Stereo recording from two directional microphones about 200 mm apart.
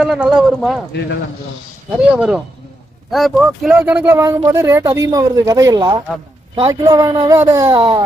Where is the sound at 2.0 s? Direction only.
5° right (ahead or behind); by 8.0 s 20° right (ahead or behind).